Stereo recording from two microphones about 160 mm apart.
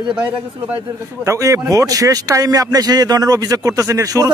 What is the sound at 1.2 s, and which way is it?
Speech, 20° right (ahead or behind).